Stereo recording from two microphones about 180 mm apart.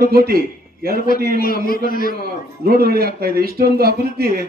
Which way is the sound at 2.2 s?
60° right (ahead or behind).